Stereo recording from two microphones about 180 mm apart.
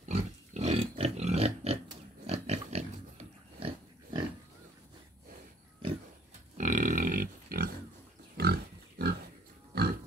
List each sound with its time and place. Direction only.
0.1 s pig: 35° right (ahead or behind)
6.6 s pig: 45° right (ahead or behind); by 9.1 s 60° right (ahead or behind)
9.7 s livestock: 65° right (ahead or behind)